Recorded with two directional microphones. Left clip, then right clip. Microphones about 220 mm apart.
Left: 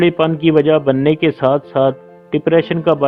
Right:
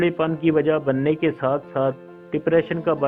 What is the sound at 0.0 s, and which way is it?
A man's voice, 45° left (ahead or behind).